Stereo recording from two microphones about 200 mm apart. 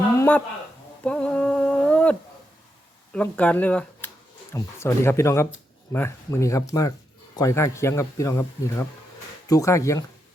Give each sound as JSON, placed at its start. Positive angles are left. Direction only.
{"t": 0.2, "sound": "a sound", "side_deg": 5}
{"t": 1.0, "sound": "humming", "side_deg": 5}
{"t": 3.1, "sound": "speech", "side_deg": 5}